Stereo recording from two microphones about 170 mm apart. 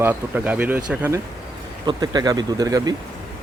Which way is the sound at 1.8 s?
25° right (ahead or behind).